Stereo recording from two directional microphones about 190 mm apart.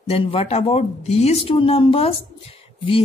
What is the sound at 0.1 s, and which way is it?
A woman's voice, 30° left (ahead or behind).